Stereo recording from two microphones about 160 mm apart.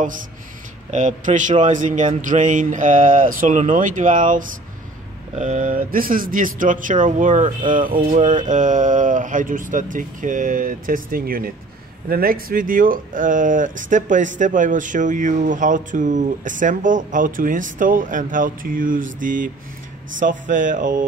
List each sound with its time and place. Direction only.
0.9 s a man's voice: 50° right (ahead or behind)